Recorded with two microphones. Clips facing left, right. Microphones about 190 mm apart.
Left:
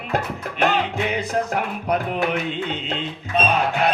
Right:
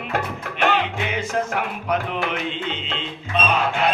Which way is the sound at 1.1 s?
35° left (ahead or behind).